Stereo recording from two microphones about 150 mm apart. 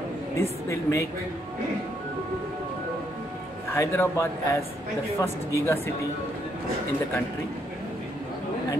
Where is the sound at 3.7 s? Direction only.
15° left (ahead or behind).